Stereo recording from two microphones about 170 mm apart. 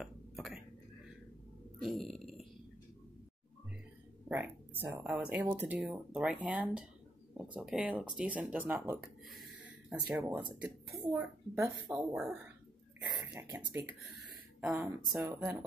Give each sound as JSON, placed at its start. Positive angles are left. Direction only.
{"t": 0.0, "sound": "whispering", "side_deg": 0}
{"t": 1.8, "sound": "speech", "side_deg": 0}
{"t": 4.3, "sound": "speech", "side_deg": -10}
{"t": 13.0, "sound": "speech", "side_deg": -20}
{"t": 15.1, "sound": "speech", "side_deg": -20}